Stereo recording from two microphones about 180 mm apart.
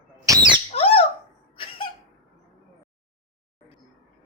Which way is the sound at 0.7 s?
35° left (ahead or behind).